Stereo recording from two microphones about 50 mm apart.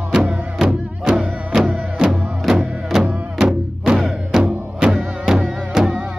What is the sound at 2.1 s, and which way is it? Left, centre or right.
Music, centre.